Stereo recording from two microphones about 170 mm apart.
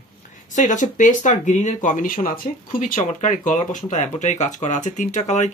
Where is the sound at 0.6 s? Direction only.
50° left (ahead or behind).